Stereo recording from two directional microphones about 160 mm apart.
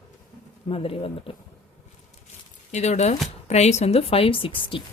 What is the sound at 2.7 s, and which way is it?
Speech, 45° left (ahead or behind).